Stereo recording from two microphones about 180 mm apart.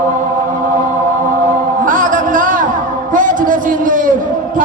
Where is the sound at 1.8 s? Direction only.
50° right (ahead or behind).